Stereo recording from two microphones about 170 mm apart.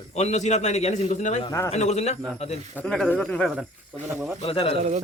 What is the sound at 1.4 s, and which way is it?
Speech, 20° left (ahead or behind).